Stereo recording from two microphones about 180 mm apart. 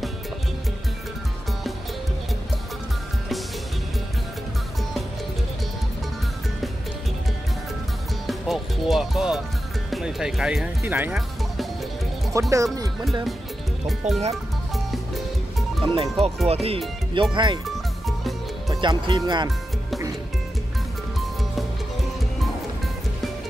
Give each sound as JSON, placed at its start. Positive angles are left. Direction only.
{"t": 8.3, "sound": "music", "side_deg": 0}
{"t": 9.8, "sound": "speech", "side_deg": 0}
{"t": 12.4, "sound": "speech", "side_deg": -15}
{"t": 13.8, "sound": "speech", "side_deg": 0}
{"t": 15.9, "sound": "speech", "side_deg": -35}
{"t": 17.6, "sound": "music", "side_deg": 0}
{"t": 18.7, "sound": "speech", "side_deg": -25}